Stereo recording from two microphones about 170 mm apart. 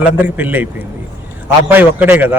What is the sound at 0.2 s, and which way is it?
A man's voice, 10° right (ahead or behind).